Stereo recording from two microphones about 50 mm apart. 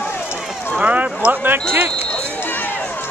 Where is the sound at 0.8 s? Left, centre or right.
Right.